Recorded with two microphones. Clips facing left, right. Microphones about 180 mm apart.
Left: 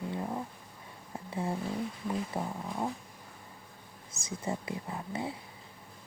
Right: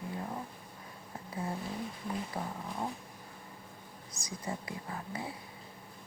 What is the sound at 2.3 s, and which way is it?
Speech, 25° left (ahead or behind).